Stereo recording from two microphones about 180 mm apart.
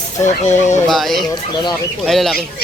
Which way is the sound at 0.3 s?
40° left (ahead or behind).